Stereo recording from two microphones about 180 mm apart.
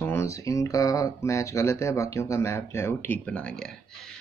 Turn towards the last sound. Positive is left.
turn(degrees=5)  # may be behind; listen again after turning